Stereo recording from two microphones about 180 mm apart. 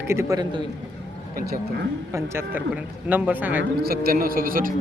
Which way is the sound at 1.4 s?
60° right (ahead or behind).